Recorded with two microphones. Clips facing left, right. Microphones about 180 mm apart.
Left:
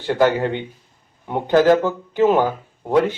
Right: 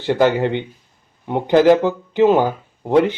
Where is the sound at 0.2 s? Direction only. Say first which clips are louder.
Even; 15° right (ahead or behind).